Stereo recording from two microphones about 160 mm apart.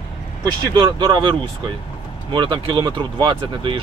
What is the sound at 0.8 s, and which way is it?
Speech, 25° right (ahead or behind).